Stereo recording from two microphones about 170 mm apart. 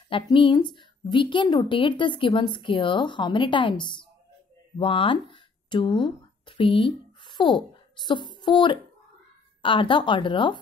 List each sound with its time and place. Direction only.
0.1 s a woman's voice: 30° left (ahead or behind)